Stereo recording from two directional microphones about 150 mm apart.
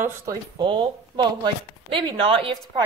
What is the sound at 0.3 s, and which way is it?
Speech, 30° right (ahead or behind).